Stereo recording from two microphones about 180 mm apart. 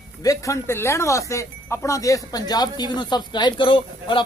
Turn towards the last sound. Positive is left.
turn(degrees=30)  # may be behind; listen again after turning